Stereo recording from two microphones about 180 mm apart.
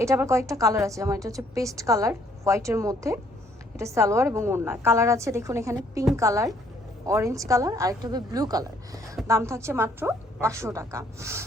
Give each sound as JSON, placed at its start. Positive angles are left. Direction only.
{"t": 0.0, "sound": "a woman's voice", "side_deg": -15}